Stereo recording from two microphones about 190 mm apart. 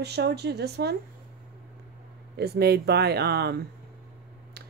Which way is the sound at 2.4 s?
60° right (ahead or behind).